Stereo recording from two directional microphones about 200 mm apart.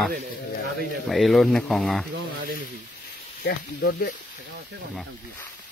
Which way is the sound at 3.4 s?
55° left (ahead or behind).